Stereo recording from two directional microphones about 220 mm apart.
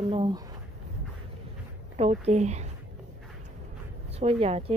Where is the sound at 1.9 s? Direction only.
30° right (ahead or behind).